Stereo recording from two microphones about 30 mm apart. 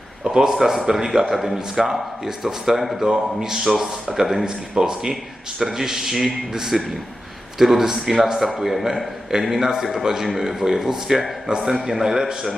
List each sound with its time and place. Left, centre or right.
0.3 s a man's voice: right
1.3 s a man's voice: centre
1.5 s a man's voice: centre
5.5 s a man's voice: centre